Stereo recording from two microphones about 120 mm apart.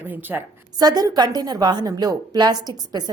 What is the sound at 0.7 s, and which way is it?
A woman's voice, 35° right (ahead or behind).